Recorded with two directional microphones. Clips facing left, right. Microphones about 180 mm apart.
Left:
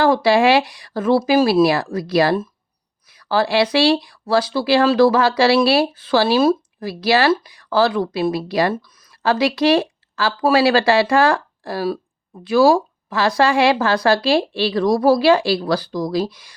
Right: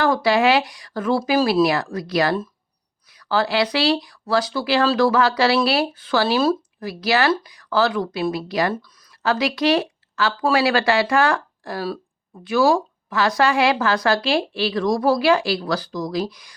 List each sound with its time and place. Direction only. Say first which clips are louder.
0.0 s a woman's voice: left 3 dB; 30° left (ahead or behind)